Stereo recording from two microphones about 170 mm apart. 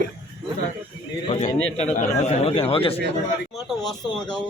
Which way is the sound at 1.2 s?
40° left (ahead or behind).